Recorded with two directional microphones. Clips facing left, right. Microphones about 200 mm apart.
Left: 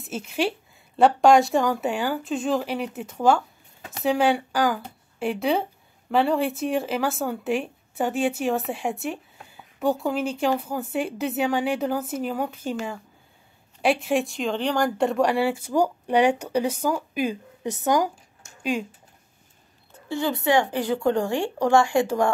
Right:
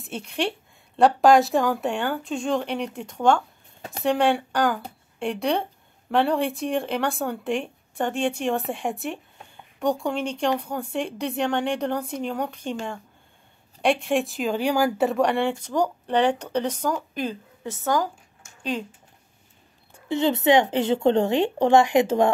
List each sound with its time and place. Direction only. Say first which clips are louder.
0.0 s speech: left 2 dB; 5° left (ahead or behind)
19.9 s speech: right 4 dB; 20° right (ahead or behind)